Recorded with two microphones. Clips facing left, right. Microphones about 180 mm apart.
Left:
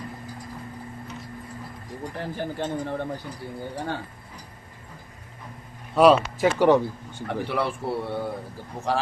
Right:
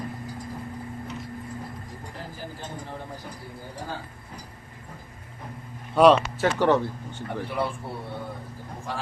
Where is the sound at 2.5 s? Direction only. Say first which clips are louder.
Left 9 dB; 70° left (ahead or behind).